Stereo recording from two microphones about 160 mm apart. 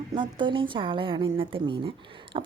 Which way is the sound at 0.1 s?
30° right (ahead or behind).